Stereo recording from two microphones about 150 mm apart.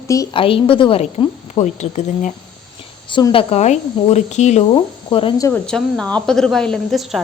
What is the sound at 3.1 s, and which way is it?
Speech, 30° left (ahead or behind).